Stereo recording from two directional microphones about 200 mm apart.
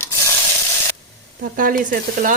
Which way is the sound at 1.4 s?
45° right (ahead or behind).